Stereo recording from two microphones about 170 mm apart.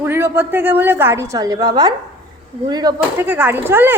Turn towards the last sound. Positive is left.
turn(degrees=-10)  # may be behind; listen again after turning